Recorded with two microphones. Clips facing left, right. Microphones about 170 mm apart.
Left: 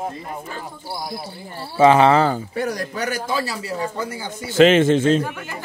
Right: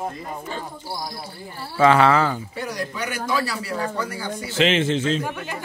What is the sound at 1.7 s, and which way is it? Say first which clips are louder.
Speech: left 3 dB; 20° left (ahead or behind).